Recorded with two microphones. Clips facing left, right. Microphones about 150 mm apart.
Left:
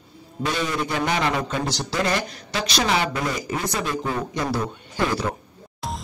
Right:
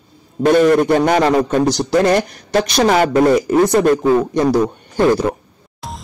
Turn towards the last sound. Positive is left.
turn(degrees=0)  # may be behind; listen again after turning